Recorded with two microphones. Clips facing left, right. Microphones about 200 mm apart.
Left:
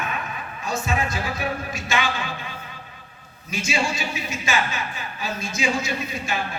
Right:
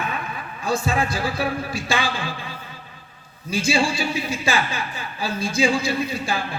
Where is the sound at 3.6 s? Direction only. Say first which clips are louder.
Right 4 dB; 35° right (ahead or behind).